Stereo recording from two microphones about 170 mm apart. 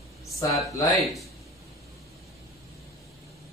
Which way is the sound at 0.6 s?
20° left (ahead or behind).